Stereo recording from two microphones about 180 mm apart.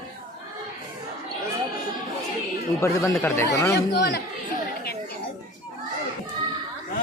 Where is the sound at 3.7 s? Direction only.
65° left (ahead or behind).